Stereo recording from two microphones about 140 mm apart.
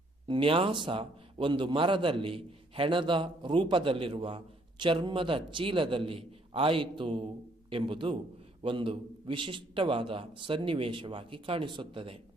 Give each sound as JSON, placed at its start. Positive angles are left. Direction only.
{"t": 0.3, "sound": "a man's voice", "side_deg": -40}